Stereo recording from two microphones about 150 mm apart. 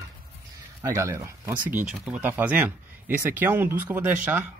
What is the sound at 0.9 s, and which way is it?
Speech, 20° right (ahead or behind).